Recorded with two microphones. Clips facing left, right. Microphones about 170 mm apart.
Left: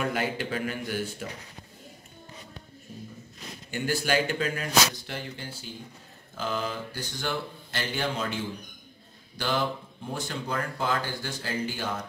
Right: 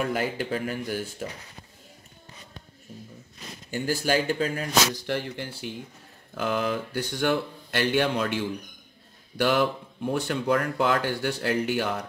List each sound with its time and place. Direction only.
0.0 s a man's voice: 40° right (ahead or behind)
3.7 s a man's voice: 40° right (ahead or behind)
5.0 s speech: 65° right (ahead or behind)
9.4 s speech: 70° right (ahead or behind)